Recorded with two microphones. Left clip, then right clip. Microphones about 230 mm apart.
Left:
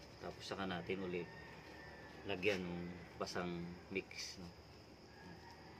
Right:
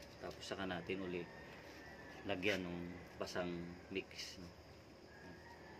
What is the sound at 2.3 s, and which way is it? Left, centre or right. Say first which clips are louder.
Speech: left 1 dB; centre.